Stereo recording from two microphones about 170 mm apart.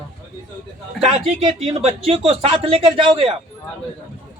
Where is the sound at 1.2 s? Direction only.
40° right (ahead or behind).